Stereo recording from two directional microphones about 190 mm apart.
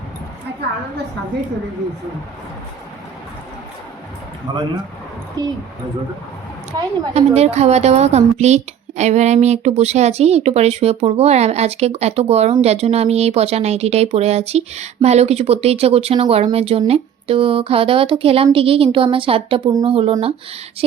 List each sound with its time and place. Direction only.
4.5 s a woman's voice: 20° right (ahead or behind)
6.7 s a woman's voice: 20° right (ahead or behind)
7.1 s a woman's voice: 35° right (ahead or behind)